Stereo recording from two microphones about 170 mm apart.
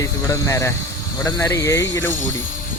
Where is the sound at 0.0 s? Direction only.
20° left (ahead or behind).